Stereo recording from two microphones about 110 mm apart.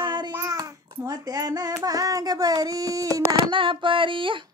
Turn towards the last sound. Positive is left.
turn(degrees=-50)  # may be behind; listen again after turning